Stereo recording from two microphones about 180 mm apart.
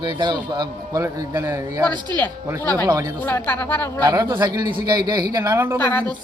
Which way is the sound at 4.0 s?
20° right (ahead or behind).